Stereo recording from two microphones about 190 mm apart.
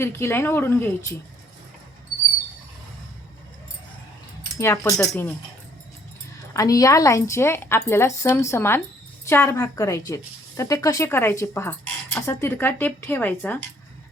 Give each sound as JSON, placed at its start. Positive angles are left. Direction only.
{"t": 0.0, "sound": "speech", "side_deg": 15}
{"t": 4.5, "sound": "speech", "side_deg": 15}
{"t": 6.5, "sound": "speech", "side_deg": 20}